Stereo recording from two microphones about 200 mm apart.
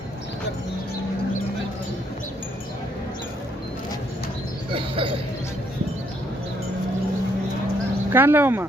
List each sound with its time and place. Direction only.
4.7 s speech: 25° right (ahead or behind)
8.1 s speech: 10° right (ahead or behind)